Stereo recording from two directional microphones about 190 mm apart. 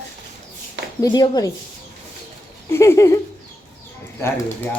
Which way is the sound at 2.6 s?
15° left (ahead or behind).